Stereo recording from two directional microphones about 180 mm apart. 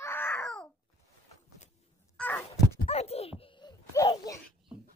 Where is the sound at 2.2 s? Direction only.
10° left (ahead or behind).